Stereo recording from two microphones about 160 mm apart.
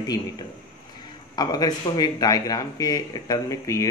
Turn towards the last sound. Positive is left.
turn(degrees=20)  # may be behind; listen again after turning